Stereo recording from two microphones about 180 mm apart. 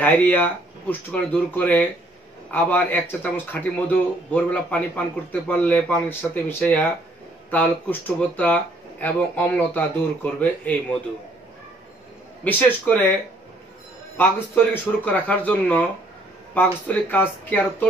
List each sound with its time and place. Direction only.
0.0 s speech: 10° left (ahead or behind)
12.4 s speech: 10° left (ahead or behind)
14.1 s speech: 10° left (ahead or behind)
16.8 s speech: 10° left (ahead or behind)